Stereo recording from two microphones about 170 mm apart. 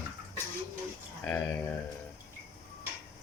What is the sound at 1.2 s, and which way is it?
Speech, 10° left (ahead or behind).